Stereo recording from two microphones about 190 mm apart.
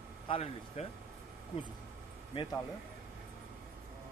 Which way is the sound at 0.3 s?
35° left (ahead or behind).